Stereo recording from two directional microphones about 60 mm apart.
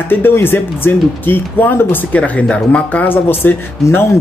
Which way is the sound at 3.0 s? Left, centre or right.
Left.